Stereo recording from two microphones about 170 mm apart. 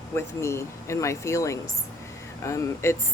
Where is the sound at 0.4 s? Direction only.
15° left (ahead or behind).